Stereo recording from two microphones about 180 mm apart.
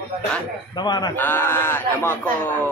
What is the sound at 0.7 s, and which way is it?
Speech, 25° left (ahead or behind).